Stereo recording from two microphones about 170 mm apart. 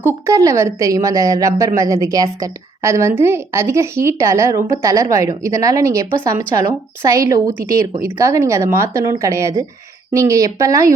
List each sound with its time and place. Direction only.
0.0 s a woman's voice: 15° right (ahead or behind)